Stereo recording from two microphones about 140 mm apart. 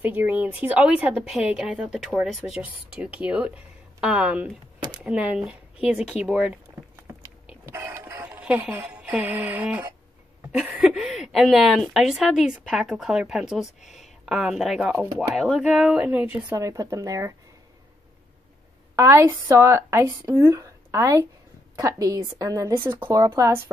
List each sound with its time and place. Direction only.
0.0 s a woman's voice: 10° right (ahead or behind)
7.1 s vehicle: 20° right (ahead or behind)
7.6 s music: 20° right (ahead or behind)
8.7 s a woman's voice: 15° right (ahead or behind)
18.9 s a woman's voice: 20° right (ahead or behind)